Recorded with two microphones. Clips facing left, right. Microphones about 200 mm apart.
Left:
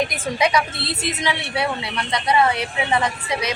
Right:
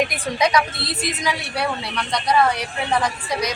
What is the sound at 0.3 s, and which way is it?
A woman's voice, 5° left (ahead or behind).